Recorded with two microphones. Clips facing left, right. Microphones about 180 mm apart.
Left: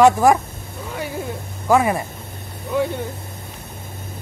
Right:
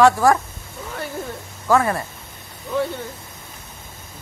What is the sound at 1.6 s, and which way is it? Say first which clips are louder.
Speech: left 2 dB; 15° left (ahead or behind).